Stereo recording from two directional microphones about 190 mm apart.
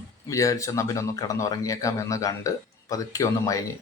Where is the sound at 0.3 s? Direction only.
15° left (ahead or behind).